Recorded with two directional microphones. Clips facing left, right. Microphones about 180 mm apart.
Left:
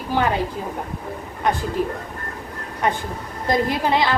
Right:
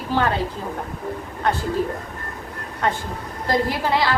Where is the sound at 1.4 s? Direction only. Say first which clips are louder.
Left 1 dB; 15° left (ahead or behind).